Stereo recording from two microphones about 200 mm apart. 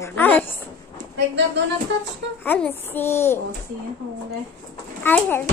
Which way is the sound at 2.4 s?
10° left (ahead or behind).